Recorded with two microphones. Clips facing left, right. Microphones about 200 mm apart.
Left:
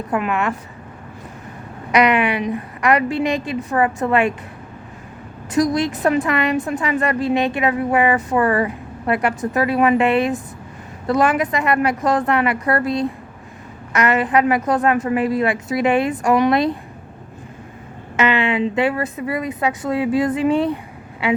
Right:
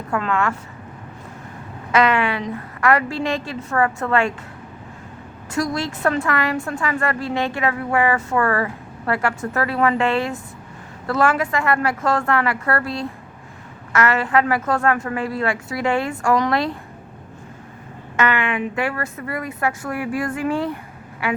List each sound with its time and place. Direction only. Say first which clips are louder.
0.1 s a woman's voice: left 1 dB; 20° left (ahead or behind)
1.9 s a woman's voice: left 2 dB; 15° left (ahead or behind)
5.5 s a woman's voice: left 6 dB; 20° left (ahead or behind)
18.2 s a woman's voice: left 3 dB; 20° left (ahead or behind)